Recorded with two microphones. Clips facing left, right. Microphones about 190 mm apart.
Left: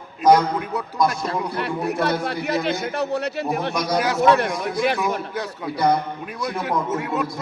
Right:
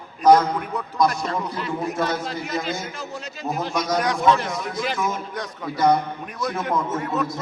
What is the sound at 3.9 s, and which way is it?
Speech, 5° left (ahead or behind).